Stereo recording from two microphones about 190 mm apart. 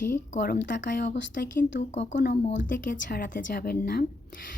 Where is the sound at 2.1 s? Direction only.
60° left (ahead or behind).